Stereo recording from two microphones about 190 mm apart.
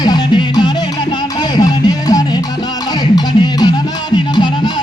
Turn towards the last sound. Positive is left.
turn(degrees=25)  # may be behind; listen again after turning